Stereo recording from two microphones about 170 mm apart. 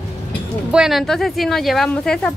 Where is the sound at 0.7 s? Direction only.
Centre (ahead or behind).